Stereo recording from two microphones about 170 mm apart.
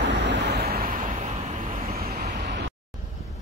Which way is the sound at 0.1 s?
90° right.